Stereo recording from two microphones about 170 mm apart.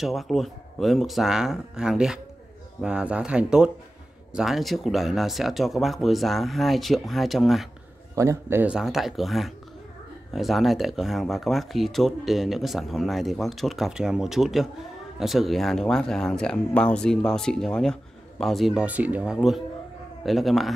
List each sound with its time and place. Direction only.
0.0 s speech: centre (ahead or behind)
8.2 s speech: 15° right (ahead or behind); by 20.7 s centre (ahead or behind)